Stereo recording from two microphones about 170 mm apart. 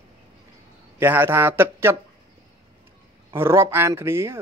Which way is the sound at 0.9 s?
10° right (ahead or behind).